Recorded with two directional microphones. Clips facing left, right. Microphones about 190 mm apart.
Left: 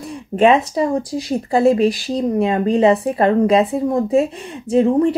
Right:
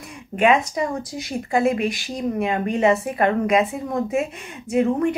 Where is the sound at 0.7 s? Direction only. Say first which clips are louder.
Left 7 dB; 30° left (ahead or behind).